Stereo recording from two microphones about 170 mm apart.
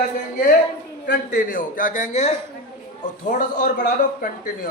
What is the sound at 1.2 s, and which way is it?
Speech, 55° left (ahead or behind).